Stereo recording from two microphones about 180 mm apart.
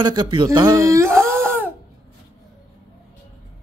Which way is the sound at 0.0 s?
25° right (ahead or behind).